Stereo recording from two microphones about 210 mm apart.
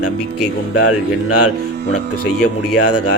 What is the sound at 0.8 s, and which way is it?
Speech, 90° left.